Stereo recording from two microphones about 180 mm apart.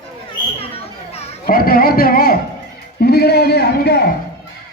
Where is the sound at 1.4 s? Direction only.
55° left (ahead or behind).